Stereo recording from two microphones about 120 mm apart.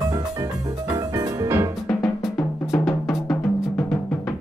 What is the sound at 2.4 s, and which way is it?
Drum, 25° left (ahead or behind).